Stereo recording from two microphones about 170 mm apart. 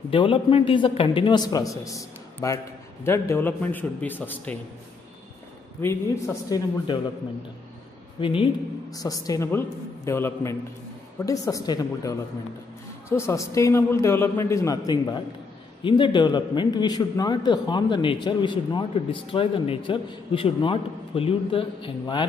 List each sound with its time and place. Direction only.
0.1 s a man's voice: 30° left (ahead or behind); by 4.6 s 10° left (ahead or behind)
5.8 s a man's voice: 15° left (ahead or behind)
8.2 s speech: 30° left (ahead or behind)
8.9 s a man's voice: 20° left (ahead or behind)